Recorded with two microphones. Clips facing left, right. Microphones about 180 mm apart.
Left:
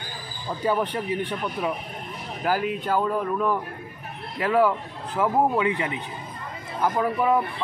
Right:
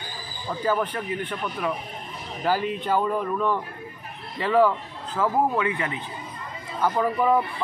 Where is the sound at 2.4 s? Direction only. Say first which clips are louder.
Even; 5° left (ahead or behind).